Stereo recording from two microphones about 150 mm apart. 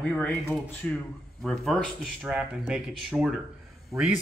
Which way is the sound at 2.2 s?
10° right (ahead or behind).